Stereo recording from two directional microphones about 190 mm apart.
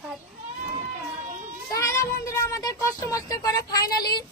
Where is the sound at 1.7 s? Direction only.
15° left (ahead or behind).